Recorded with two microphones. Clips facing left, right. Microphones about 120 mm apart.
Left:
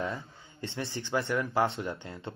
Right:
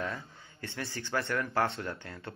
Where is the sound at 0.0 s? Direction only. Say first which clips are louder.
Left 2 dB; 25° left (ahead or behind).